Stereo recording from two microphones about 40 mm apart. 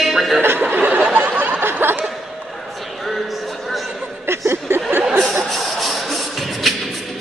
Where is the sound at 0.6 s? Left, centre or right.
Right.